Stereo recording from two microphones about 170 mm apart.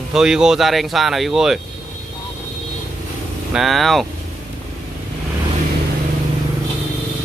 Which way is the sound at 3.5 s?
Centre (ahead or behind).